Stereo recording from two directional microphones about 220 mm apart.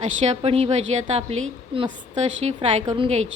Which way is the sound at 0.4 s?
25° right (ahead or behind).